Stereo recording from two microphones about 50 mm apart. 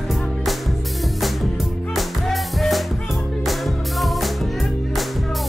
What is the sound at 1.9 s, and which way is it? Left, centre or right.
Music, centre.